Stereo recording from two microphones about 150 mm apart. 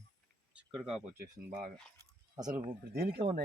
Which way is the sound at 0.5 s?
5° right (ahead or behind).